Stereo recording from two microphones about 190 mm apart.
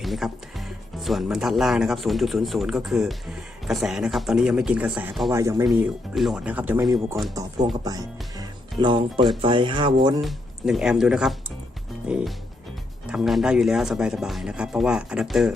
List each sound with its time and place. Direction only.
0.0 s speech: centre (ahead or behind)
5.3 s speech: 15° right (ahead or behind)
5.6 s speech: centre (ahead or behind); by 10.2 s 25° right (ahead or behind)
10.2 s speech: centre (ahead or behind)